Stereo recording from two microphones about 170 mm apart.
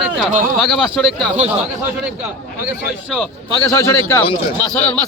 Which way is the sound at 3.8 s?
15° left (ahead or behind).